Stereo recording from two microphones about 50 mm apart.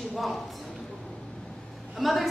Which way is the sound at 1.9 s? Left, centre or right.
Centre.